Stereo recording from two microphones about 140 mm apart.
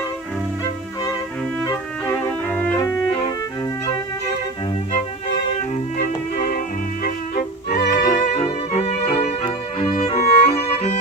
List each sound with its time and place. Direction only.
2.0 s music: 25° left (ahead or behind)
2.5 s cello: 10° left (ahead or behind)
6.3 s music: 85° left; by 11.0 s 50° left (ahead or behind)